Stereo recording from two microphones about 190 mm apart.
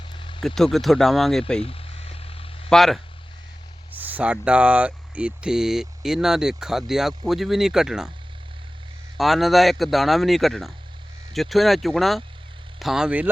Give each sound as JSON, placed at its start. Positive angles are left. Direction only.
{"t": 0.1, "sound": "a sound", "side_deg": 25}
{"t": 0.4, "sound": "speech", "side_deg": 0}
{"t": 1.6, "sound": "vehicle", "side_deg": 30}
{"t": 2.6, "sound": "speech", "side_deg": 0}
{"t": 9.1, "sound": "speech", "side_deg": 0}